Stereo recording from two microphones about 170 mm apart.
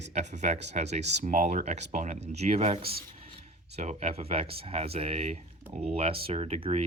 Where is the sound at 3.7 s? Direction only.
40° right (ahead or behind).